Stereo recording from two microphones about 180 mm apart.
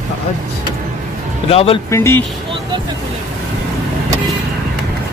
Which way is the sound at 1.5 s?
35° left (ahead or behind).